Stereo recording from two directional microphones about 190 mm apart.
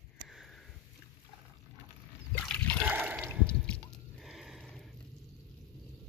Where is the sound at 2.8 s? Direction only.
10° right (ahead or behind).